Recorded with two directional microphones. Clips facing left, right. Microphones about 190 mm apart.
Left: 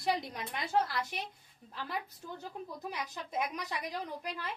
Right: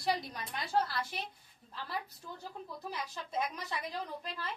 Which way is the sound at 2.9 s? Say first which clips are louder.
Right 1 dB; 15° left (ahead or behind).